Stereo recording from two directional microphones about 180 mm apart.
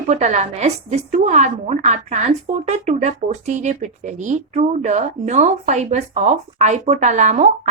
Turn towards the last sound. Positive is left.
turn(degrees=-40)  # may be behind; listen again after turning